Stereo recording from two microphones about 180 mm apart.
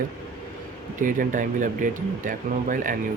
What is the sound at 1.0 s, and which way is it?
Speech, 45° right (ahead or behind).